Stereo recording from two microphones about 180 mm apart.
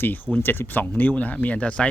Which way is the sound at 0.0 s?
10° left (ahead or behind).